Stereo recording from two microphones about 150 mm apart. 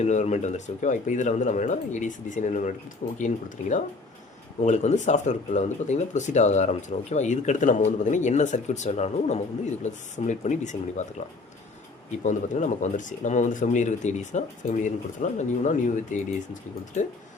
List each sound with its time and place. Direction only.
0.0 s speech: 50° left (ahead or behind)
12.2 s speech: 55° left (ahead or behind)